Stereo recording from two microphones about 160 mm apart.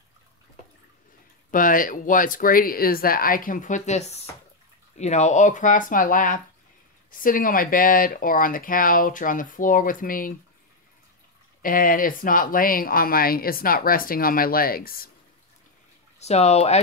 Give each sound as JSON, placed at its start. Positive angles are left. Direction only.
{"t": 1.5, "sound": "speech", "side_deg": 60}
{"t": 11.6, "sound": "speech", "side_deg": 60}
{"t": 16.2, "sound": "speech", "side_deg": 40}